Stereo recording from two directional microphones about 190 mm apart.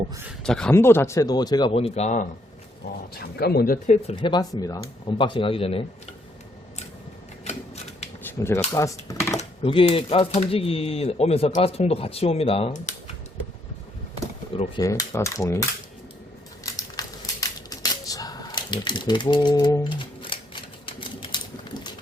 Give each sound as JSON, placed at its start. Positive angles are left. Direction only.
{"t": 0.3, "sound": "speech", "side_deg": 5}
{"t": 3.2, "sound": "speech", "side_deg": 55}
{"t": 4.1, "sound": "speech", "side_deg": 25}
{"t": 8.2, "sound": "speech", "side_deg": 15}
{"t": 9.4, "sound": "speech", "side_deg": 30}
{"t": 14.8, "sound": "speech", "side_deg": 15}
{"t": 16.6, "sound": "a sound", "side_deg": 20}